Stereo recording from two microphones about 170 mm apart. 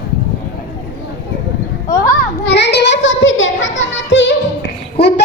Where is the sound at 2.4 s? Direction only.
90° left.